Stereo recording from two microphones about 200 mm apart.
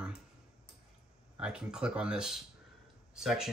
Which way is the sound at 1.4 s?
5° right (ahead or behind).